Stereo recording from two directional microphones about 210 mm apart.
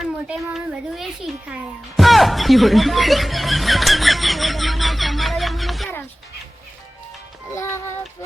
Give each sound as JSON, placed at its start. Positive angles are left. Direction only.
{"t": 0.0, "sound": "a child's voice", "side_deg": 0}
{"t": 7.5, "sound": "speech", "side_deg": 15}